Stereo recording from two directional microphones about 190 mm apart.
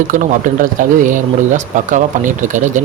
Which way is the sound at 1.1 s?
40° right (ahead or behind).